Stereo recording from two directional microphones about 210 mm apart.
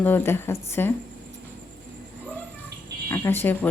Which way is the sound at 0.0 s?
10° left (ahead or behind).